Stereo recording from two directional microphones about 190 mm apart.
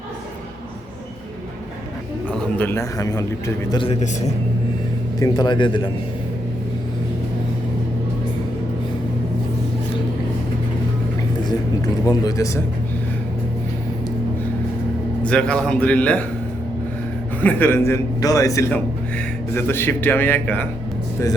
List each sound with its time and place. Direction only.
2.3 s a man's voice: 10° left (ahead or behind)
5.2 s speech: 25° left (ahead or behind)
12.0 s speech: 20° left (ahead or behind)
15.2 s a man's voice: 5° left (ahead or behind)
17.4 s a man's voice: 10° left (ahead or behind)